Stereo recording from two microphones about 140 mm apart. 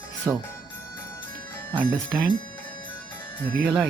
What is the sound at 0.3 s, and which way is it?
Speech, 25° right (ahead or behind).